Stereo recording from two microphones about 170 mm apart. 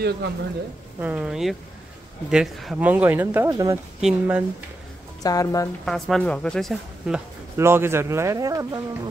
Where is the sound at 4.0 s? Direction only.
10° right (ahead or behind).